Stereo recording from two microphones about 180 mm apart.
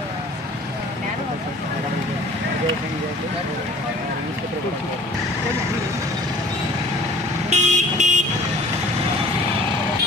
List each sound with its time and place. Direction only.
7.4 s vehicle: 40° right (ahead or behind)